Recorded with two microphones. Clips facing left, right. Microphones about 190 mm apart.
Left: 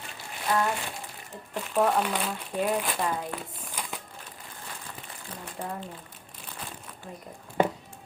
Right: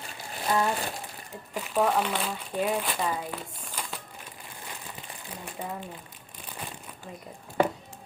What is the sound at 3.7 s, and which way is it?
Crumpling, 10° left (ahead or behind).